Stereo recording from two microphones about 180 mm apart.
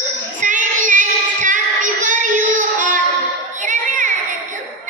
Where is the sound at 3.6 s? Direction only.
45° right (ahead or behind).